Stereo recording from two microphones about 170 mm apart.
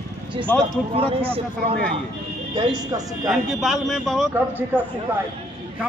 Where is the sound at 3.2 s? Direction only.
Centre (ahead or behind).